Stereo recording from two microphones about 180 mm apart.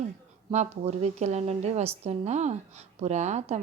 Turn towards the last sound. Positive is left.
turn(degrees=-40)  # may be behind; listen again after turning